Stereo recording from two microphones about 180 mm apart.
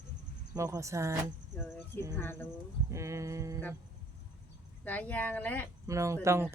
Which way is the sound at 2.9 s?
15° right (ahead or behind).